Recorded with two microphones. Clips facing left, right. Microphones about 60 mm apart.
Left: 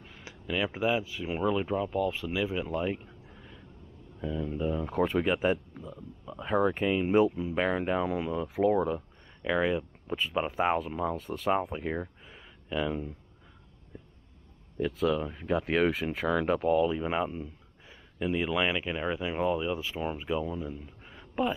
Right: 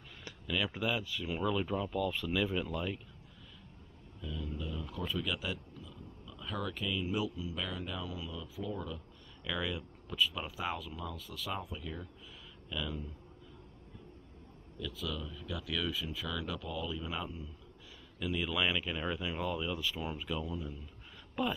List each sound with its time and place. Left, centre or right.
0.5 s speech: left
4.2 s speech: left
9.5 s speech: left
14.8 s speech: left
18.2 s speech: left
21.4 s speech: left